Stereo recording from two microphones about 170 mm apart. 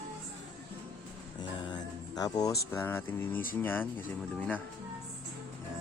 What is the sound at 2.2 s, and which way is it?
Speech, 20° left (ahead or behind).